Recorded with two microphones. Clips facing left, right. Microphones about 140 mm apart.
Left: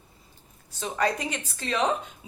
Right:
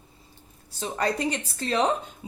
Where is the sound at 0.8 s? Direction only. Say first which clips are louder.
Right 1 dB; 35° right (ahead or behind).